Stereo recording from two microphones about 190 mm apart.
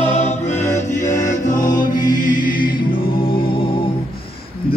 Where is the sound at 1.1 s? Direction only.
40° left (ahead or behind).